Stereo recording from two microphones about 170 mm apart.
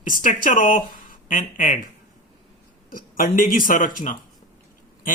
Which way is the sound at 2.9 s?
55° left (ahead or behind).